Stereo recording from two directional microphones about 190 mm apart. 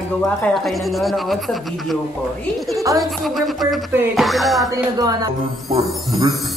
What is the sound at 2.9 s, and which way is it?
Speech, centre (ahead or behind).